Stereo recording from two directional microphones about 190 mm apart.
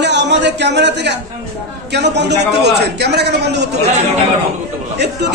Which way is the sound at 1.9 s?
65° right (ahead or behind).